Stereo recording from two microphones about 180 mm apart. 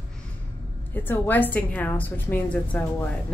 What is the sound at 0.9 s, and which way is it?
A woman's voice, 10° left (ahead or behind).